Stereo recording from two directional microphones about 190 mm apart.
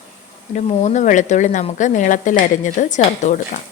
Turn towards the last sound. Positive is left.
turn(degrees=40)  # may be behind; listen again after turning